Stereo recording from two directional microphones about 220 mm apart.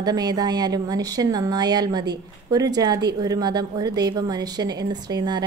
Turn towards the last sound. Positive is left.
turn(degrees=-20)  # may be behind; listen again after turning